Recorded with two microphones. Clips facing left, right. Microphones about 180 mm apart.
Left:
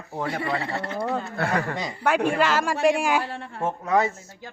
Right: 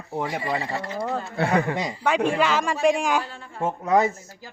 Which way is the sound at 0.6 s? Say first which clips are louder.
Even; 60° left (ahead or behind).